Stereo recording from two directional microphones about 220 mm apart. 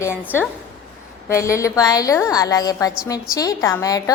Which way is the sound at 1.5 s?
15° left (ahead or behind).